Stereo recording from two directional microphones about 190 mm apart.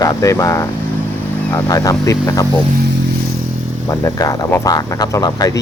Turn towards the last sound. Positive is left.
turn(degrees=20)  # may be behind; listen again after turning